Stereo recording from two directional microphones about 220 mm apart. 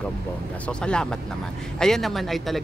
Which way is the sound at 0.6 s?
5° left (ahead or behind).